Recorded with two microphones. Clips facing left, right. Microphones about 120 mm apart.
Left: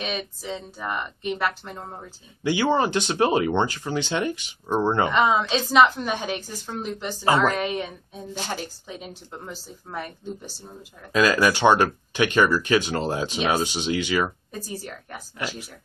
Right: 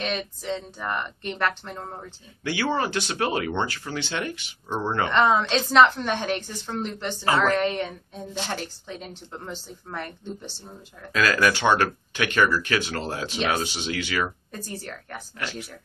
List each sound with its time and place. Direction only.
0.0 s a woman's voice: 5° left (ahead or behind)
2.4 s speech: 20° left (ahead or behind)
5.1 s a woman's voice: 5° left (ahead or behind)
7.2 s speech: 20° left (ahead or behind)
7.5 s a woman's voice: 10° left (ahead or behind)